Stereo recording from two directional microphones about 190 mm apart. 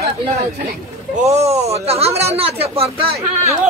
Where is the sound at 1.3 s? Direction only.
35° right (ahead or behind).